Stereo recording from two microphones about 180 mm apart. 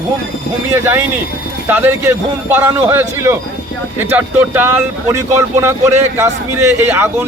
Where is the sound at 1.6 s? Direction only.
10° right (ahead or behind).